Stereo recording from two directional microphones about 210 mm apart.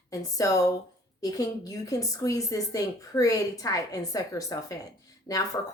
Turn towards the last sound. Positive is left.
turn(degrees=15)  # may be behind; listen again after turning